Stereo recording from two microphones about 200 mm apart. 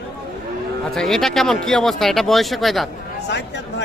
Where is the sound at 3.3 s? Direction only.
60° left (ahead or behind).